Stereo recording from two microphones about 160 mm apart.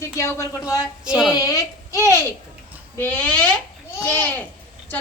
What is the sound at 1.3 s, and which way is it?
A woman's voice, 20° left (ahead or behind).